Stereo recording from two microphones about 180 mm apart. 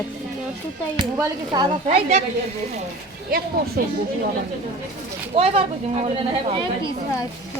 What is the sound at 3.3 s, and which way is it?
Speech, 55° right (ahead or behind).